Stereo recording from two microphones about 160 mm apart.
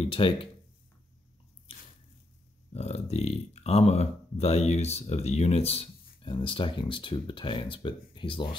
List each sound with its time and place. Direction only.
0.0 s speech: 35° left (ahead or behind)
2.7 s speech: 45° left (ahead or behind)